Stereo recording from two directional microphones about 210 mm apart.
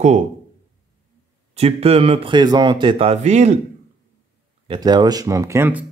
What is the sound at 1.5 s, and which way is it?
Speech, 30° right (ahead or behind).